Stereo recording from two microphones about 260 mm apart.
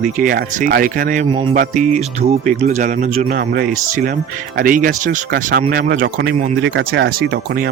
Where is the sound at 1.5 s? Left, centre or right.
Right.